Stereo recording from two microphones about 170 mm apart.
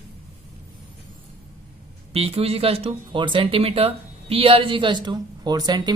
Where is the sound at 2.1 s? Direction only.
35° right (ahead or behind).